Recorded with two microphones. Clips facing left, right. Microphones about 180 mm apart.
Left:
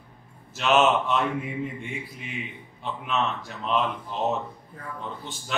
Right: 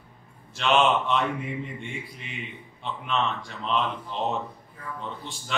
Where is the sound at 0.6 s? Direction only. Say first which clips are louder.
Left 1 dB; 5° left (ahead or behind).